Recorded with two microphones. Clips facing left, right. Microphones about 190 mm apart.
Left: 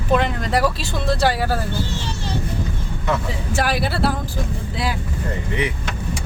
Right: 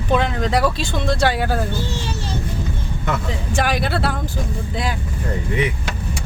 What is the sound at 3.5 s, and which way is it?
Speech, 5° left (ahead or behind).